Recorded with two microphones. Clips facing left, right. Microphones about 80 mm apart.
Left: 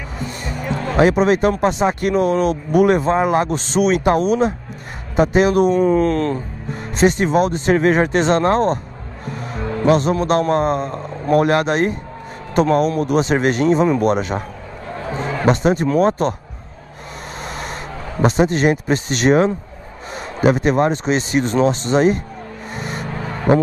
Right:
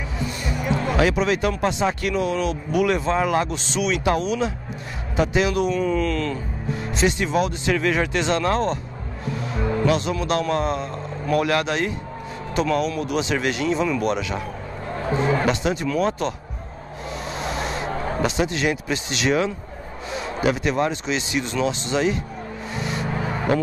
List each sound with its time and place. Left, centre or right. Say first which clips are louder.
0.2 s a sound: left 1 dB; left
2.0 s speech: left 6 dB; left
9.2 s music: even; left
9.6 s music: even; centre
9.8 s speech: left 9 dB; left
15.4 s speech: left 6 dB; left
17.4 s vehicle: right 1 dB; left
17.8 s a sound: right 3 dB; right
18.2 s speech: left 9 dB; left
22.8 s music: even; left
23.0 s vehicle: right 1 dB; centre